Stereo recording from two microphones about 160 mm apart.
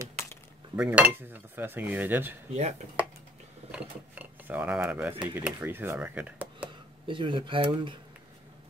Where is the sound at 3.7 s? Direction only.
10° right (ahead or behind).